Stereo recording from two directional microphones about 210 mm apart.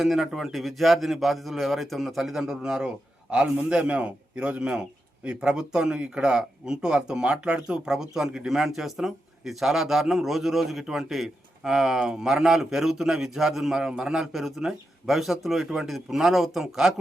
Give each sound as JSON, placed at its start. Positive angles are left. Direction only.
{"t": 0.0, "sound": "a man's voice", "side_deg": 0}